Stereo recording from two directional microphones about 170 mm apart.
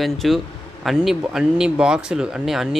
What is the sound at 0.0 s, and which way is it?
Speech, centre (ahead or behind).